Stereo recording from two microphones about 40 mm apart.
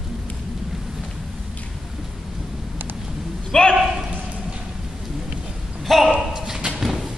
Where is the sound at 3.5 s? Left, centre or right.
Centre.